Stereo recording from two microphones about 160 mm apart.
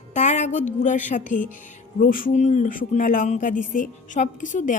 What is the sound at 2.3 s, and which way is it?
A woman's voice, 50° left (ahead or behind).